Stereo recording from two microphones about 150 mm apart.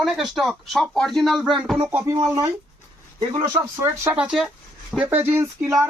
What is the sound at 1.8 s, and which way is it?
Speech, 20° right (ahead or behind).